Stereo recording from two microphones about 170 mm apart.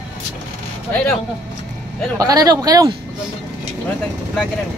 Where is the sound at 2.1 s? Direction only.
20° right (ahead or behind).